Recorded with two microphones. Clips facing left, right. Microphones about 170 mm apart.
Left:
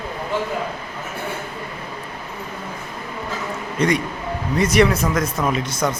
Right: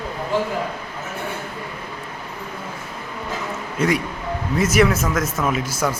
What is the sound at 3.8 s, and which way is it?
Speech, 5° right (ahead or behind).